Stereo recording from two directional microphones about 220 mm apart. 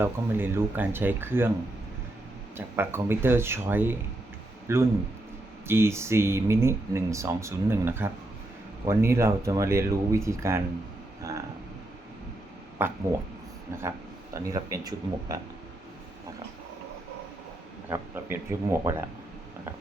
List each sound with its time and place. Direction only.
0.0 s speech: 10° right (ahead or behind)
2.6 s speech: 10° right (ahead or behind)
11.2 s a sound: 15° right (ahead or behind)
12.8 s speech: 10° right (ahead or behind)
14.3 s speech: 15° right (ahead or behind)
17.8 s speech: 10° right (ahead or behind)